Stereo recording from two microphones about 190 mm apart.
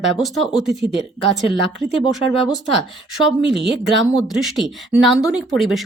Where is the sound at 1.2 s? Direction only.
30° left (ahead or behind).